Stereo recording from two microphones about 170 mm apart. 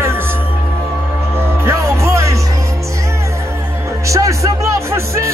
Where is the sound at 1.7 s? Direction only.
15° right (ahead or behind).